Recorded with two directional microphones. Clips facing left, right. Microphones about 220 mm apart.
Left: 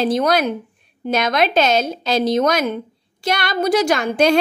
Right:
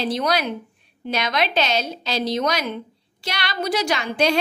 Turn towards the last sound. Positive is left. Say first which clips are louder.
# left 5 dB
turn(degrees=50)  # may be behind; listen again after turning